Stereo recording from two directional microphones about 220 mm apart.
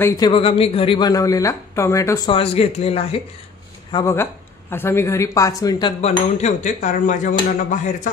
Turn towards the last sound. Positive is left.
turn(degrees=35)  # may be behind; listen again after turning